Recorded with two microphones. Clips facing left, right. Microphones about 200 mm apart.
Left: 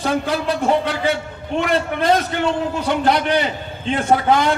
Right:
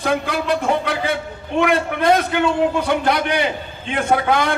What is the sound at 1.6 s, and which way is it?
Speech, 55° right (ahead or behind).